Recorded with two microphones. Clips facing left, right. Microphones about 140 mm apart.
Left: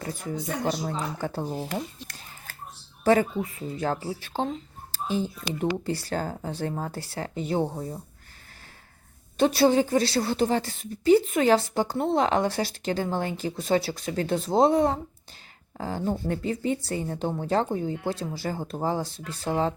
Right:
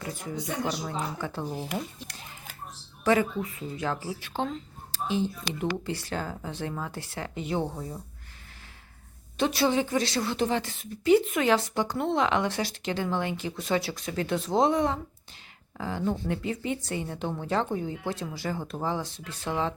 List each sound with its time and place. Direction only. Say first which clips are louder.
0.0 s a woman's voice: left 2 dB; 40° left (ahead or behind)
3.0 s a woman's voice: left 3 dB; 35° left (ahead or behind)
9.4 s a woman's voice: left 5 dB; 35° left (ahead or behind)